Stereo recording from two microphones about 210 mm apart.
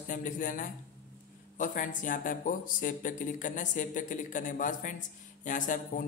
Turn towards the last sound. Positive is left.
turn(degrees=40)  # may be behind; listen again after turning